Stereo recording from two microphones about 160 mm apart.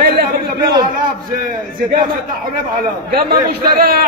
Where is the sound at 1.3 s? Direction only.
65° right (ahead or behind).